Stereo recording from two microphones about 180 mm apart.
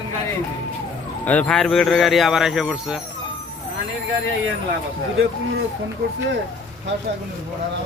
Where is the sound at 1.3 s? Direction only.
5° left (ahead or behind).